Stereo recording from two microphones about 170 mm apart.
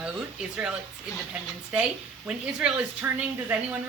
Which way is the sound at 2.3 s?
10° right (ahead or behind).